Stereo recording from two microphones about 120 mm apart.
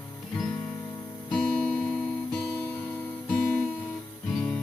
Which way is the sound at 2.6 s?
15° left (ahead or behind).